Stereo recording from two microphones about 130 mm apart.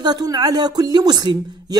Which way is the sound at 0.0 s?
30° right (ahead or behind).